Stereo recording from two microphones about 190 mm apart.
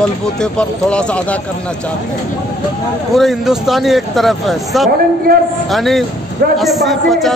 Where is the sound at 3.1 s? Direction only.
Centre (ahead or behind).